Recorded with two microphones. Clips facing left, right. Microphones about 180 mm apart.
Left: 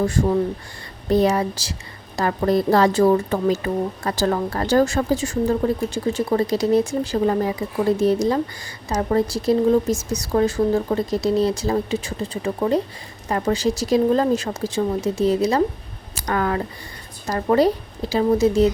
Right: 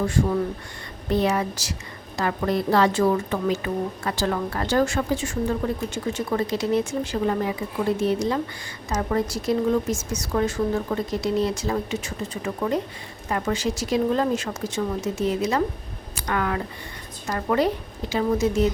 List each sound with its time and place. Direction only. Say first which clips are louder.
0.0 s a woman's voice: left 3 dB; 40° left (ahead or behind)